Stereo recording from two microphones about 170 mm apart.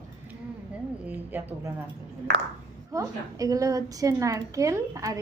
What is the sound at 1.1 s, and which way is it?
Speech, 10° right (ahead or behind).